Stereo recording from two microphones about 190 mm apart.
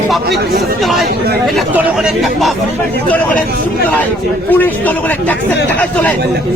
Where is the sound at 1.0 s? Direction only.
55° right (ahead or behind).